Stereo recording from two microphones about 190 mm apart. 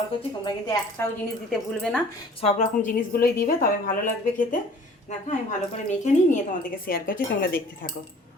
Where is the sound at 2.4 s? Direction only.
40° left (ahead or behind).